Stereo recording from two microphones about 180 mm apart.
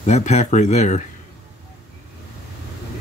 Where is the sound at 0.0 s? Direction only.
40° left (ahead or behind).